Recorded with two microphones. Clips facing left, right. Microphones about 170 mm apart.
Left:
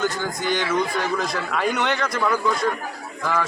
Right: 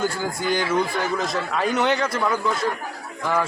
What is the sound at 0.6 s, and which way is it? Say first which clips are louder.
A man's voice: even; 10° right (ahead or behind).